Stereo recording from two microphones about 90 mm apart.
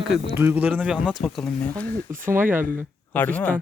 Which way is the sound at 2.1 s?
30° right (ahead or behind).